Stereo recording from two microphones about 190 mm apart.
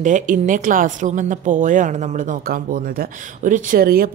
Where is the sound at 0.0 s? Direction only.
40° right (ahead or behind).